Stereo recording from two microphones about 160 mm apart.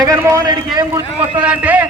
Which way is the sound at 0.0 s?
20° right (ahead or behind).